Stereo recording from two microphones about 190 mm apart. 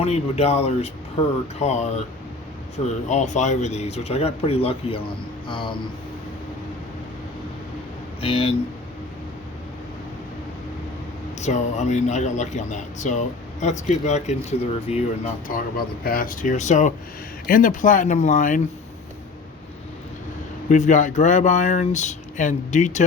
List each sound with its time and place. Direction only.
0.0 s speech: 35° left (ahead or behind)
8.2 s speech: 30° left (ahead or behind)
11.3 s speech: 35° left (ahead or behind)
15.5 s speech: 45° left (ahead or behind)
20.7 s speech: 40° left (ahead or behind)